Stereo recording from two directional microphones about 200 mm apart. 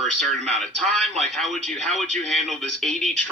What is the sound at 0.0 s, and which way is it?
Speech, centre (ahead or behind).